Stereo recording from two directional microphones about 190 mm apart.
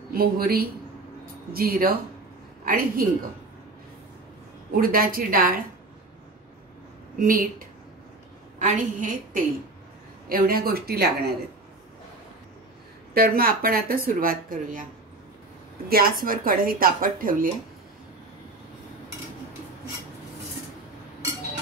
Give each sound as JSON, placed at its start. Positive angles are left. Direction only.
{"t": 0.1, "sound": "speech", "side_deg": -50}
{"t": 4.7, "sound": "speech", "side_deg": -50}
{"t": 7.2, "sound": "a woman's voice", "side_deg": -45}
{"t": 13.1, "sound": "speech", "side_deg": -50}
{"t": 15.9, "sound": "speech", "side_deg": -50}